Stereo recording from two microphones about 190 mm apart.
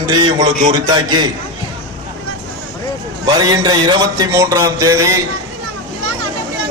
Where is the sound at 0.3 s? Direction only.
20° right (ahead or behind).